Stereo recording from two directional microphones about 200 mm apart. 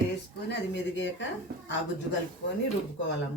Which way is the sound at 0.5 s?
65° left (ahead or behind).